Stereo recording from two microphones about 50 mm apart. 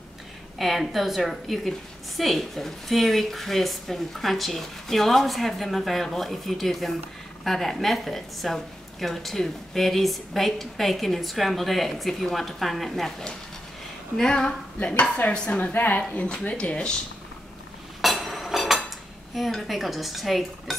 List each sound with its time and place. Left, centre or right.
0.6 s a woman's voice: centre
14.8 s speech: left
15.7 s a woman's voice: left
16.3 s speech: centre
18.0 s cutlery: centre
19.3 s a woman's voice: centre